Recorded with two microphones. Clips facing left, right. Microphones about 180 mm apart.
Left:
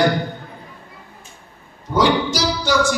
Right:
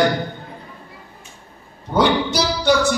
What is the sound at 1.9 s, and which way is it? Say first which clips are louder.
Music: even; 60° right (ahead or behind).